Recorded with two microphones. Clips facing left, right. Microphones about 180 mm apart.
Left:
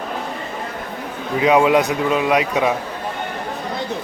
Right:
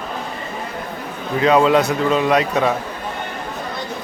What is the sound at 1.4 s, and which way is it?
Speech, 10° left (ahead or behind).